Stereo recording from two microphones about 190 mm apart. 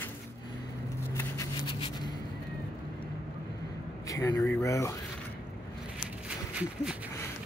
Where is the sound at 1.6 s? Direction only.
25° left (ahead or behind).